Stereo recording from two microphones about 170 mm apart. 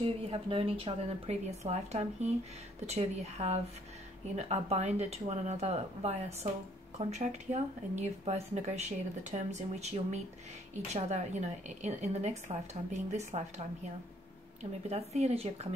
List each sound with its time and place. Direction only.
0.0 s speech: 35° right (ahead or behind)